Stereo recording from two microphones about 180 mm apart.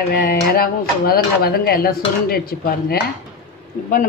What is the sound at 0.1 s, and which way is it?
Speech, 55° left (ahead or behind).